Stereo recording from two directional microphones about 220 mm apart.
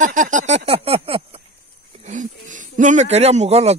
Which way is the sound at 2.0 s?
35° right (ahead or behind).